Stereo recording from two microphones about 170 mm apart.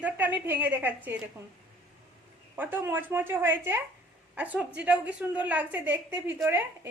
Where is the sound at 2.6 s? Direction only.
10° right (ahead or behind).